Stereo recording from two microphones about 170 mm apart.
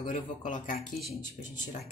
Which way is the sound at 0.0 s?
50° left (ahead or behind).